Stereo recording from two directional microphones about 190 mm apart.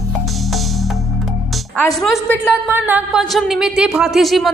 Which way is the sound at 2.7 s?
10° right (ahead or behind).